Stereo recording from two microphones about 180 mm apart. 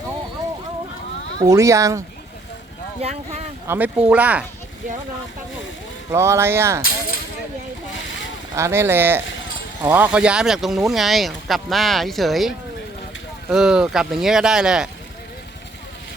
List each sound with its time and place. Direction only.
1.4 s speech: 15° right (ahead or behind)
3.0 s speech: 35° right (ahead or behind)
3.7 s speech: 10° right (ahead or behind)
6.1 s speech: 15° right (ahead or behind)
8.5 s speech: 15° right (ahead or behind)